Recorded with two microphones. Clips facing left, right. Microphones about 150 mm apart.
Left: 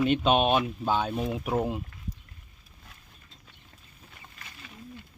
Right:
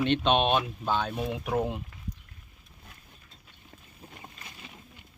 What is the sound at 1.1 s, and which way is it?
Speech, centre (ahead or behind).